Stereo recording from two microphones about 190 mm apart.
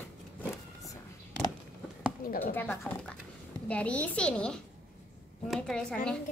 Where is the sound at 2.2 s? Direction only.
45° left (ahead or behind).